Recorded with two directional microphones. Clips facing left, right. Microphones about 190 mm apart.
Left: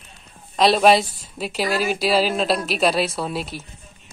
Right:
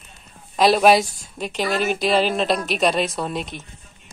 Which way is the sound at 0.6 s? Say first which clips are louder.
Even; centre (ahead or behind).